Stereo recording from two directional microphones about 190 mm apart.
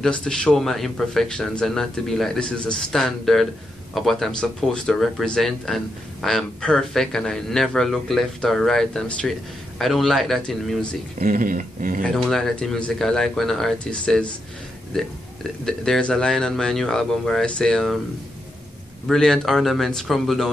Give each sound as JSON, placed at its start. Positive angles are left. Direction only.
{"t": 0.0, "sound": "speech", "side_deg": 5}
{"t": 11.1, "sound": "speech", "side_deg": -45}
{"t": 12.1, "sound": "speech", "side_deg": 0}
{"t": 19.0, "sound": "speech", "side_deg": 0}